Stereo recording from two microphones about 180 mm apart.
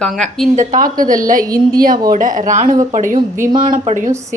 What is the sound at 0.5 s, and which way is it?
A woman's voice, 45° right (ahead or behind).